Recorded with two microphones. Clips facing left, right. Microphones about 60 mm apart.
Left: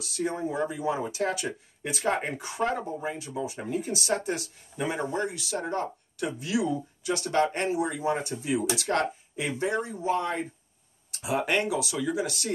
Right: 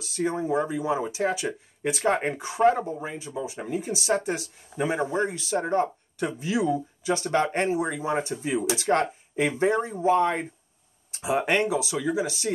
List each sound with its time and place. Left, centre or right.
0.1 s speech: right